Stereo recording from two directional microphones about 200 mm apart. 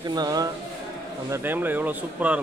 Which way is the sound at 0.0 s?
20° right (ahead or behind).